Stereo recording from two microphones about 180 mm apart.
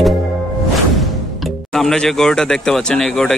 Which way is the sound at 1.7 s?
Centre (ahead or behind).